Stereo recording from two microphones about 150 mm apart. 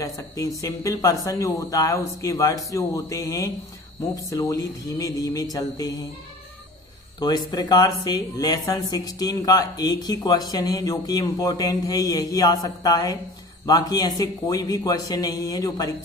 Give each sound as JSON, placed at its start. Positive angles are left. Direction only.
{"t": 0.0, "sound": "speech", "side_deg": 25}
{"t": 7.2, "sound": "speech", "side_deg": 25}